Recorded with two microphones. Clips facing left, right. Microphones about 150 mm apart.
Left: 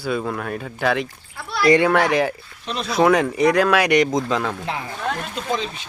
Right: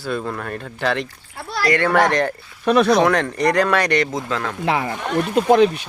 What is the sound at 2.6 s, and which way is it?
Speech, 65° right (ahead or behind).